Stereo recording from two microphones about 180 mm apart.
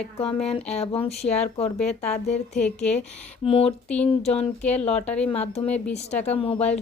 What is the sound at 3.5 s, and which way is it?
Speech, 30° left (ahead or behind).